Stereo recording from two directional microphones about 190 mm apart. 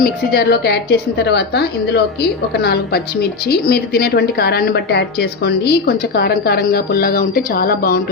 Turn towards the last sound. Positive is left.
turn(degrees=50)  # may be behind; listen again after turning